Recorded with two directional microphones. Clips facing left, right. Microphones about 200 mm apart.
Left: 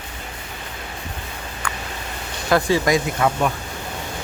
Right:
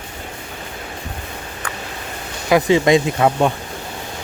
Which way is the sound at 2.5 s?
20° right (ahead or behind).